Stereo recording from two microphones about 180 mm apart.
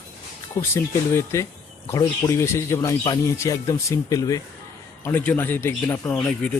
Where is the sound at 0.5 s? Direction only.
15° left (ahead or behind).